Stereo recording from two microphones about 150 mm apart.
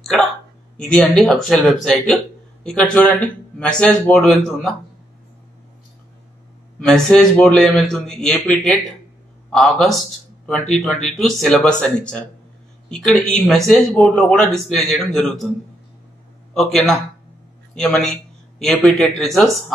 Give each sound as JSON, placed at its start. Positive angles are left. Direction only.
{"t": 0.0, "sound": "a sound", "side_deg": 0}
{"t": 0.7, "sound": "a man's voice", "side_deg": 5}
{"t": 6.8, "sound": "a man's voice", "side_deg": 5}
{"t": 16.5, "sound": "a man's voice", "side_deg": 5}